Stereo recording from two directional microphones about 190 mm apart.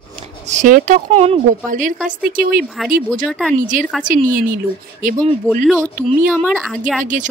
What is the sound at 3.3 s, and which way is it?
Speech, centre (ahead or behind).